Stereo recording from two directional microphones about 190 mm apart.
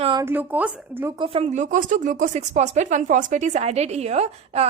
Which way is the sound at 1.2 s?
30° right (ahead or behind).